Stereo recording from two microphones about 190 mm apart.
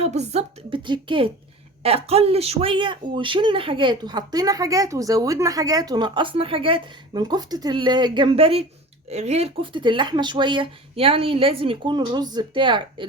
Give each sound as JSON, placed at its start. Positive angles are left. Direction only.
{"t": 0.0, "sound": "speech", "side_deg": -35}